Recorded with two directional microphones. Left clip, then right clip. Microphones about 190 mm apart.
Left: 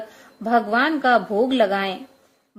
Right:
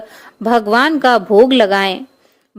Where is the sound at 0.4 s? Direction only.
60° right (ahead or behind).